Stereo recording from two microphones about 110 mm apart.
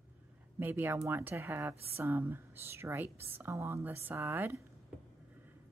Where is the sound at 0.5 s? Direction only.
20° right (ahead or behind).